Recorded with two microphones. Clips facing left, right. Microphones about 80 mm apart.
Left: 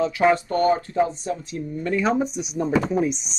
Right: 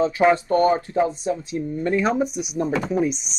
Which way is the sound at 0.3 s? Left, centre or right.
Right.